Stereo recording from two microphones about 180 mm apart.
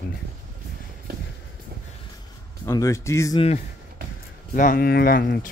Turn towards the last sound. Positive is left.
turn(degrees=55)  # may be behind; listen again after turning